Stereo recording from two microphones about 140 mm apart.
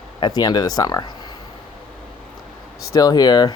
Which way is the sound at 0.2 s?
30° left (ahead or behind).